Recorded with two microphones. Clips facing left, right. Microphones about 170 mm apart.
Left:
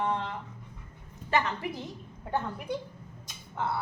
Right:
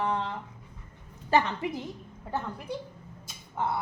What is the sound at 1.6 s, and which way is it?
Speech, 25° right (ahead or behind).